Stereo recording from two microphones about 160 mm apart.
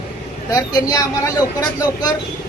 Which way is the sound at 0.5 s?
20° left (ahead or behind).